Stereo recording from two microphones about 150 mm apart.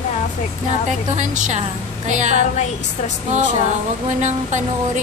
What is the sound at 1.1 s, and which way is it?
A woman's voice, 55° right (ahead or behind).